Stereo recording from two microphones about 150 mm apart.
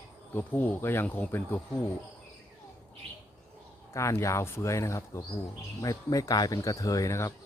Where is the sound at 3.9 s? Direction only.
20° left (ahead or behind).